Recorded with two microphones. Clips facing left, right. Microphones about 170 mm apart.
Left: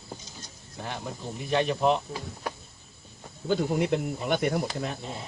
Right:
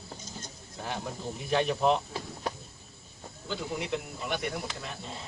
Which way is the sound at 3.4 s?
50° left (ahead or behind).